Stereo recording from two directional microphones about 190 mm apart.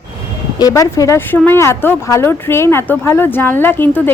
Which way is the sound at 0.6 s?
20° left (ahead or behind).